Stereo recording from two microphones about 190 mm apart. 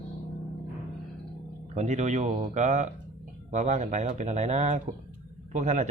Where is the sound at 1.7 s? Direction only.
40° right (ahead or behind).